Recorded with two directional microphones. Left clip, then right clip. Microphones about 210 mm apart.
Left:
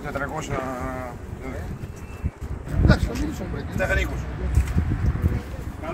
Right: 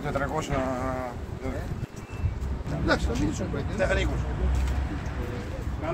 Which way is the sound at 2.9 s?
50° left (ahead or behind).